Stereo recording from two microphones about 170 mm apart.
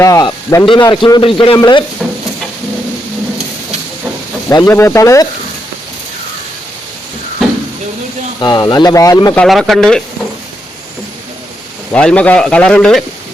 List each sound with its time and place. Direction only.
0.0 s a man's voice: 20° left (ahead or behind)
4.4 s speech: 15° left (ahead or behind)
8.4 s a man's voice: 25° left (ahead or behind)
9.4 s speech: centre (ahead or behind)
11.9 s speech: 5° left (ahead or behind)